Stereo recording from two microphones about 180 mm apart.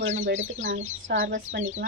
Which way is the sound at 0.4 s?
40° right (ahead or behind).